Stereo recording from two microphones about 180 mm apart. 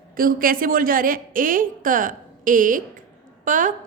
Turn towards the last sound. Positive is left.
turn(degrees=-45)  # may be behind; listen again after turning